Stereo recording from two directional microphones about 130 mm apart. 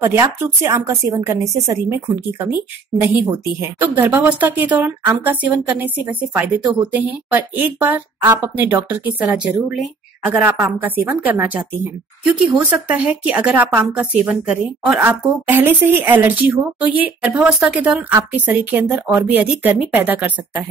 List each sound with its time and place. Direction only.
0.0 s a woman's voice: 20° right (ahead or behind)